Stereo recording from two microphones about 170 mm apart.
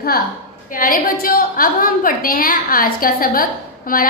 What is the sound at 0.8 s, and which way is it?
A woman's voice, 55° left (ahead or behind).